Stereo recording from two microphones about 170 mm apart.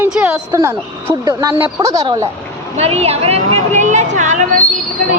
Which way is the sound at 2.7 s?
35° right (ahead or behind).